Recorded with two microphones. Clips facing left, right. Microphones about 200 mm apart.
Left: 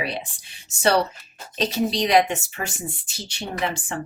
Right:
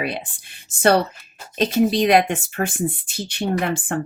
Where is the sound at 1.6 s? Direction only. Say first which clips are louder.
Right 5 dB; 55° right (ahead or behind).